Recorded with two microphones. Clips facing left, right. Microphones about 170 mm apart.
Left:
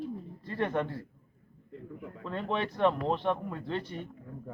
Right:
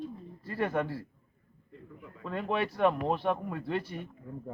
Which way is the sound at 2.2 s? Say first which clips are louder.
Right 1 dB; 5° right (ahead or behind).